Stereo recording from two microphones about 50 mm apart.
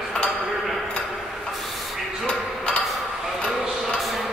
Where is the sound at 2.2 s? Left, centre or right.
Left.